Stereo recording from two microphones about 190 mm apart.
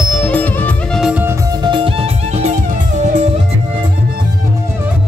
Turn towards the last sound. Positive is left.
turn(degrees=-40)  # may be behind; listen again after turning